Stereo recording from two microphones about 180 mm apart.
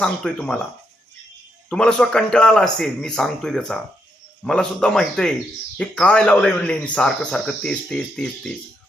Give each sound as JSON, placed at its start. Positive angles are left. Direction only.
{"t": 0.0, "sound": "a man's voice", "side_deg": 5}
{"t": 1.7, "sound": "a man's voice", "side_deg": 5}